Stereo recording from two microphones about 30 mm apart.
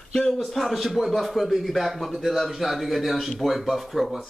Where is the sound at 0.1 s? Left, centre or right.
Centre.